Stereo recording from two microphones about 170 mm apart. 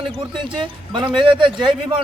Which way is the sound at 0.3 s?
30° right (ahead or behind).